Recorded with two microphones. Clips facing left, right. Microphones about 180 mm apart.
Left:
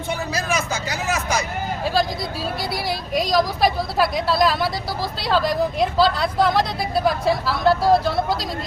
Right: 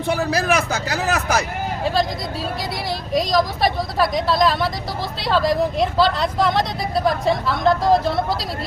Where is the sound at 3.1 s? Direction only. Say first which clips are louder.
Right 1 dB; centre (ahead or behind).